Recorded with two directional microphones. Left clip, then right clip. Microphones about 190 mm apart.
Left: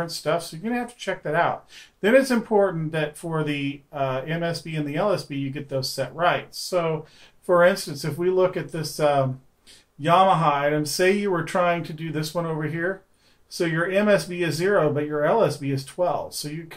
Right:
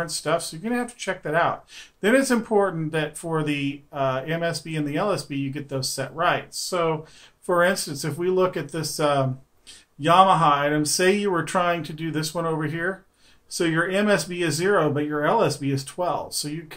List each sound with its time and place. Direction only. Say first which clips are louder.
0.0 s speech: even; 10° right (ahead or behind)